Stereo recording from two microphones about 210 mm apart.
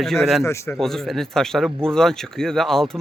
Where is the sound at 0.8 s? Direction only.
Centre (ahead or behind).